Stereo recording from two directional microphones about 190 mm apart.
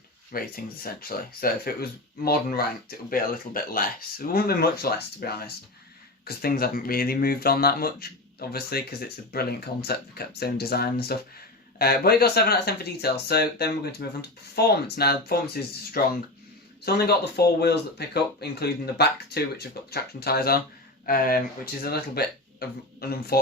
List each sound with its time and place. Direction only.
0.3 s speech: 50° left (ahead or behind)